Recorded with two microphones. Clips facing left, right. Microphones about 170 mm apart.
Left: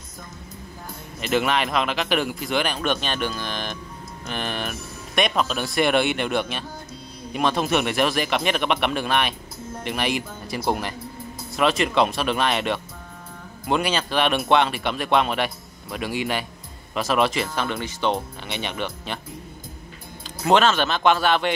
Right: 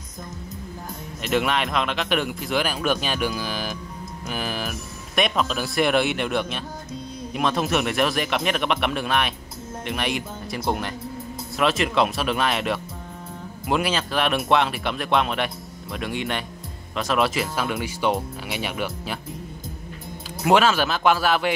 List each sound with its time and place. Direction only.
1.2 s speech: centre (ahead or behind)
20.4 s speech: 5° right (ahead or behind)